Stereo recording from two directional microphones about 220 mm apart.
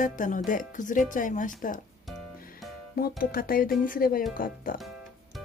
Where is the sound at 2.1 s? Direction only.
Centre (ahead or behind).